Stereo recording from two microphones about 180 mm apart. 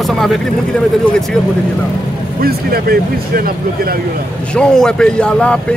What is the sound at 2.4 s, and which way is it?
Speech, 60° right (ahead or behind).